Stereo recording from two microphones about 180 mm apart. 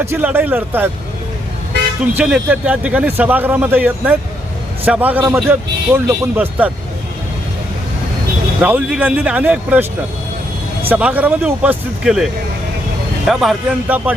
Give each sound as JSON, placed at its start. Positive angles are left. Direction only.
{"t": 0.0, "sound": "speech", "side_deg": -10}
{"t": 2.1, "sound": "speech", "side_deg": -5}
{"t": 8.6, "sound": "speech", "side_deg": -10}
{"t": 10.8, "sound": "speech", "side_deg": -10}